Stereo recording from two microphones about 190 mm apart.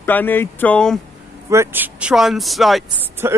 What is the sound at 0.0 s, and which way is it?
Speech, 10° left (ahead or behind).